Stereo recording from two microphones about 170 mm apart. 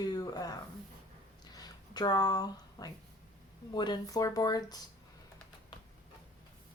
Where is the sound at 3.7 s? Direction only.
25° left (ahead or behind).